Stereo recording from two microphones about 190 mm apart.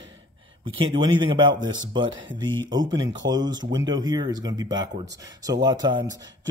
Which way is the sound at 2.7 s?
20° right (ahead or behind).